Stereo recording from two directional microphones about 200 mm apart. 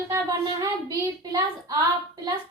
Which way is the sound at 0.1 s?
15° right (ahead or behind).